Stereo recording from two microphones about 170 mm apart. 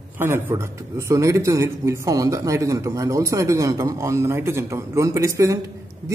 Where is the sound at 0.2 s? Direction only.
15° right (ahead or behind).